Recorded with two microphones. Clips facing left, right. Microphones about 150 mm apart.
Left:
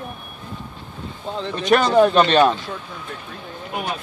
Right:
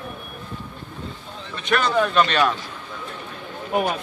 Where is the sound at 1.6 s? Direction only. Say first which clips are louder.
Left 6 dB; 35° left (ahead or behind).